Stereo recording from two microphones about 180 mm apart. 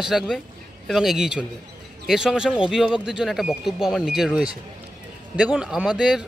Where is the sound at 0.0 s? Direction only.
Centre (ahead or behind).